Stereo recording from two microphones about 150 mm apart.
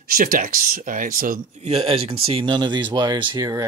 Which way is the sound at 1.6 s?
40° right (ahead or behind).